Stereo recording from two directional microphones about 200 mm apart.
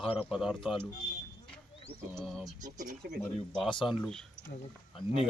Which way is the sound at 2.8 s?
45° right (ahead or behind).